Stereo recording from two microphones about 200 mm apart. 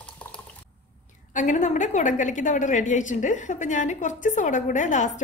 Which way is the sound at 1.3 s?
40° left (ahead or behind).